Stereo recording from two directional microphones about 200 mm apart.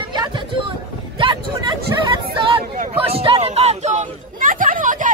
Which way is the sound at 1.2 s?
25° right (ahead or behind).